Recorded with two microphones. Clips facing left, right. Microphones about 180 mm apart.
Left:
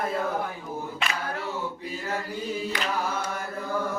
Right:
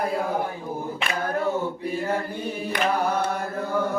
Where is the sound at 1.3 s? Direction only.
50° right (ahead or behind).